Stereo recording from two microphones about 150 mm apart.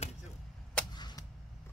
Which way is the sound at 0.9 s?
30° left (ahead or behind).